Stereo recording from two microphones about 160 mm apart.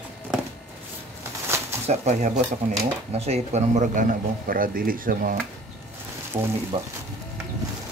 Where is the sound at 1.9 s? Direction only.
45° right (ahead or behind).